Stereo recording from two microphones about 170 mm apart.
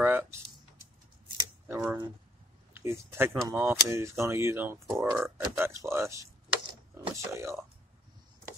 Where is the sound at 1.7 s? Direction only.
10° right (ahead or behind).